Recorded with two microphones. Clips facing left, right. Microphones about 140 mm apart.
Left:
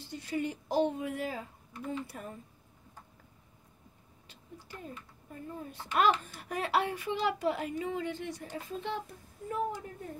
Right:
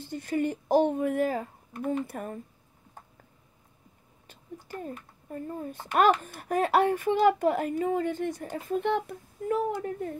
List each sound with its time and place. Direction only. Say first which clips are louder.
0.0 s a child's voice: right 6 dB; 50° right (ahead or behind)
4.3 s a child's voice: right 8 dB; 45° right (ahead or behind); by 9.9 s 70° right (ahead or behind)